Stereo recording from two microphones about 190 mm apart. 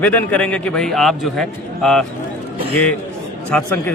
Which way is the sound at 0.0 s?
10° left (ahead or behind).